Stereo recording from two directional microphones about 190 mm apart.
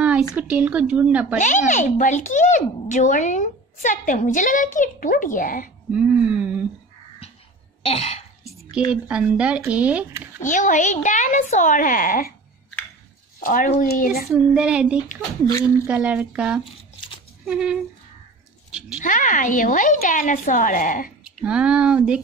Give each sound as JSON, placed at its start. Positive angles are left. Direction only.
{"t": 0.3, "sound": "speech", "side_deg": -5}
{"t": 1.7, "sound": "speech", "side_deg": 40}
{"t": 5.9, "sound": "a sound", "side_deg": -5}
{"t": 7.8, "sound": "cough", "side_deg": 35}
{"t": 8.9, "sound": "speech", "side_deg": -5}
{"t": 10.4, "sound": "a woman's voice", "side_deg": 40}
{"t": 13.4, "sound": "speech", "side_deg": 45}
{"t": 14.2, "sound": "child singing", "side_deg": -5}
{"t": 15.9, "sound": "speech", "side_deg": -5}
{"t": 17.5, "sound": "child singing", "side_deg": -5}
{"t": 18.7, "sound": "speech", "side_deg": -5}
{"t": 18.9, "sound": "speech", "side_deg": 45}
{"t": 21.2, "sound": "speech", "side_deg": -5}